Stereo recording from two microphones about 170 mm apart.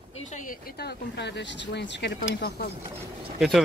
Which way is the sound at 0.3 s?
50° left (ahead or behind).